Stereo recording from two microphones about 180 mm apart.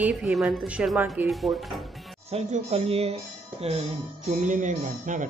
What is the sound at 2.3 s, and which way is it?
Speech, 40° right (ahead or behind).